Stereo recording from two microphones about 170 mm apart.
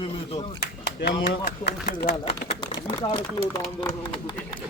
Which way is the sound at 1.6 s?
70° left (ahead or behind).